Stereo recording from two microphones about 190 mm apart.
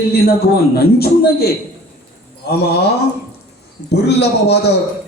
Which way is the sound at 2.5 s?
55° left (ahead or behind).